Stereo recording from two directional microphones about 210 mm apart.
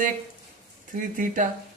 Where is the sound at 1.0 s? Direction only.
40° right (ahead or behind).